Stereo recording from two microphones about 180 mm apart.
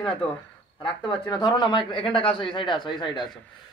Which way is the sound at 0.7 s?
25° left (ahead or behind).